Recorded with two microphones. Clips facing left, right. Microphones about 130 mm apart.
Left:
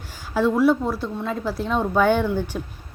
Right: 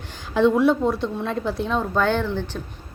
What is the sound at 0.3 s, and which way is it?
A woman's voice, 5° left (ahead or behind).